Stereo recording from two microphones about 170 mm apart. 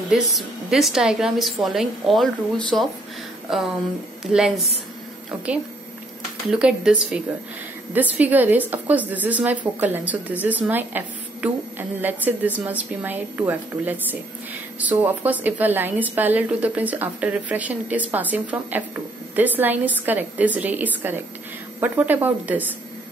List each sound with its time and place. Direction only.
0.1 s a woman's voice: centre (ahead or behind)
6.5 s a woman's voice: 5° right (ahead or behind)